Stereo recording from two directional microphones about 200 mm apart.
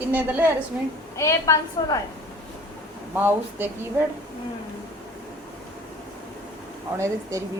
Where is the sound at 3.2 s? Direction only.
10° right (ahead or behind).